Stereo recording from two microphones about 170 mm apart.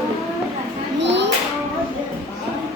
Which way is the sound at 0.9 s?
90° right.